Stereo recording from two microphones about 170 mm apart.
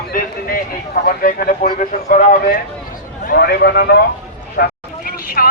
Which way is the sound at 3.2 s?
65° left (ahead or behind).